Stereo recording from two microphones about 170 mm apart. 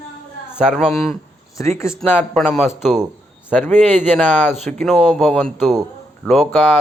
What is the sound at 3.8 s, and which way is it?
Speech, 5° left (ahead or behind).